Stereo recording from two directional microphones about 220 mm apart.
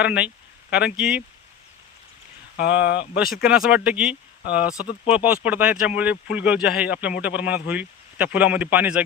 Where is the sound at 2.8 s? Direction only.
50° left (ahead or behind).